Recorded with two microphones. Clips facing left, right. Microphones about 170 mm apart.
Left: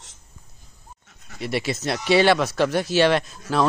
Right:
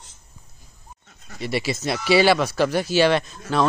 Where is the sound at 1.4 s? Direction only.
Centre (ahead or behind).